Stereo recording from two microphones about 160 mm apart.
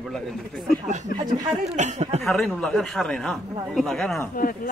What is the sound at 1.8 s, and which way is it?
Speech, 45° right (ahead or behind).